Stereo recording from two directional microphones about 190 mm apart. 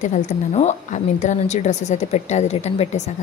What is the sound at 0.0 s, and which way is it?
A woman's voice, 40° left (ahead or behind).